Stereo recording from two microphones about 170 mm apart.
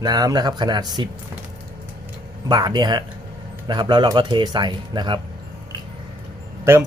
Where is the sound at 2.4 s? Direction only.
25° right (ahead or behind).